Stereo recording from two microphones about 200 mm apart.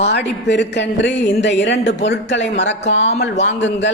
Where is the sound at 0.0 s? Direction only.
60° left (ahead or behind).